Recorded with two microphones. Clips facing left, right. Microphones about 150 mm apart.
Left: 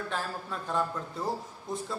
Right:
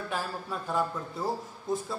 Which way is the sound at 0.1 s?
5° right (ahead or behind).